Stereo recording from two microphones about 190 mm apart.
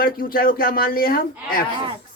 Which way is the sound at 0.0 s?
50° left (ahead or behind).